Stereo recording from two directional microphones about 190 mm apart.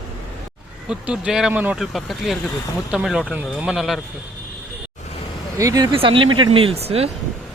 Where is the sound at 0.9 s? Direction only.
5° right (ahead or behind).